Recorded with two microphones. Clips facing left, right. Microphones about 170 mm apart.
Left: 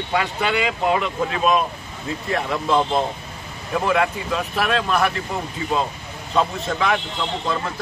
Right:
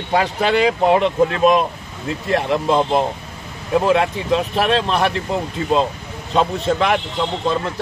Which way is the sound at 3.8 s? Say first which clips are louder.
Right 2 dB; 25° right (ahead or behind).